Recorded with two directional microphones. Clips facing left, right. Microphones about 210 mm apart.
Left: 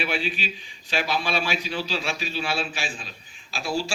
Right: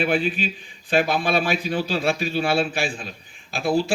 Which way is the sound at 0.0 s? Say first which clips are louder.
Right 6 dB; 50° right (ahead or behind).